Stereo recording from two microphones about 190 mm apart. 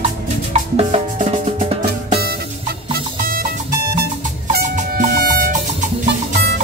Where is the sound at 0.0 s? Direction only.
35° right (ahead or behind).